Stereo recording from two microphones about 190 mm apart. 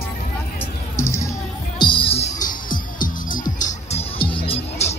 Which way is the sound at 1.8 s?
25° left (ahead or behind).